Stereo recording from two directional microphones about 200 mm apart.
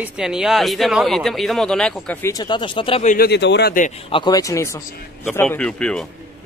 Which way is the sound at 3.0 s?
40° left (ahead or behind).